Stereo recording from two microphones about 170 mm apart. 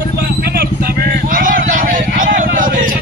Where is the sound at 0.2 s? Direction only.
65° right (ahead or behind).